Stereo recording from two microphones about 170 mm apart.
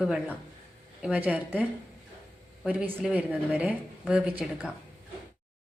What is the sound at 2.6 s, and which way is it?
A woman's voice, 5° right (ahead or behind).